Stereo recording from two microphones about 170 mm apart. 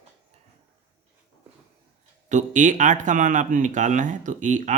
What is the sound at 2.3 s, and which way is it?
Speech, 45° right (ahead or behind).